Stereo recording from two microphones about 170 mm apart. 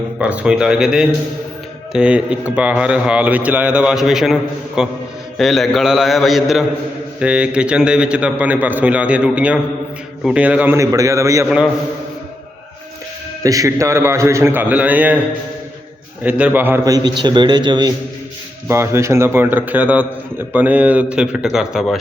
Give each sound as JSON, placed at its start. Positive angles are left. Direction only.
{"t": 0.2, "sound": "a man's voice", "side_deg": -5}
{"t": 11.4, "sound": "a man's voice", "side_deg": -5}
{"t": 13.4, "sound": "a man's voice", "side_deg": -20}
{"t": 16.2, "sound": "a man's voice", "side_deg": -10}